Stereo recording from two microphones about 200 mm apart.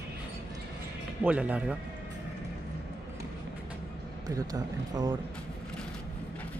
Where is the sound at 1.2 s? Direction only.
5° right (ahead or behind).